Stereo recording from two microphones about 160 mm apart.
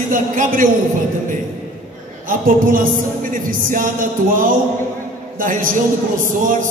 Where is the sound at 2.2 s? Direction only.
60° right (ahead or behind).